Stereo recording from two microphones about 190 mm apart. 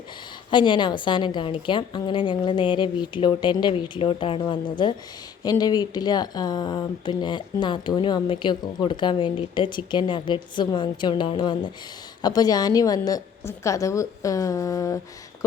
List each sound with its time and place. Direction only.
0.5 s a woman's voice: 25° left (ahead or behind)